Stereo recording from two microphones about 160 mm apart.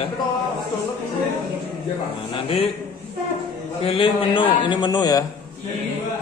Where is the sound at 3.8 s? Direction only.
35° left (ahead or behind).